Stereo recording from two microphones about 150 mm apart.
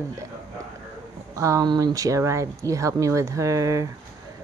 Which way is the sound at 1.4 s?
20° right (ahead or behind).